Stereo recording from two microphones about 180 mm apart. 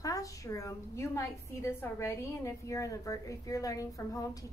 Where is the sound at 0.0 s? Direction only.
20° left (ahead or behind).